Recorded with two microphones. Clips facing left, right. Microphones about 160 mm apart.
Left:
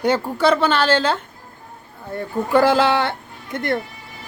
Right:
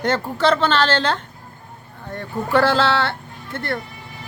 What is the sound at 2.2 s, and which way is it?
A woman's voice, 15° left (ahead or behind).